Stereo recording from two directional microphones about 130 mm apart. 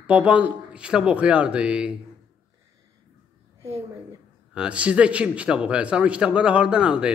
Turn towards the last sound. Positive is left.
turn(degrees=-5)  # may be behind; listen again after turning